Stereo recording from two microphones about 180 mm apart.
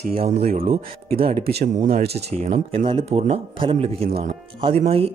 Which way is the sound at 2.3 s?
35° right (ahead or behind).